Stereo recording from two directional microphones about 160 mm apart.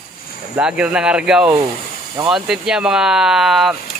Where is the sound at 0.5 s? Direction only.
5° right (ahead or behind).